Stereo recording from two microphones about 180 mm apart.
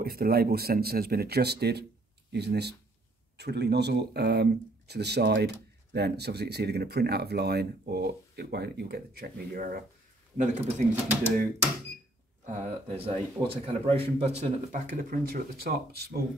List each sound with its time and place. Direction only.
0.0 s speech: 60° right (ahead or behind)
10.3 s speech: 40° right (ahead or behind)
12.4 s a man's voice: 30° right (ahead or behind); by 16.2 s 60° right (ahead or behind)